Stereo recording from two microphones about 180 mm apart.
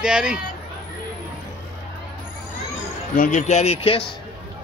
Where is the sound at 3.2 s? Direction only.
45° left (ahead or behind).